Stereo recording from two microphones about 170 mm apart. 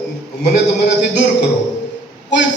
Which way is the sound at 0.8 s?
90° left.